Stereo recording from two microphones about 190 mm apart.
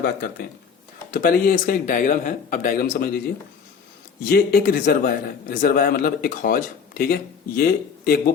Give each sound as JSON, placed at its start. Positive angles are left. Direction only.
{"t": 0.0, "sound": "a man's voice", "side_deg": 55}